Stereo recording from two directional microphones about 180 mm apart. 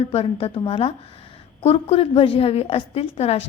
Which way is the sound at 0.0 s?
30° left (ahead or behind).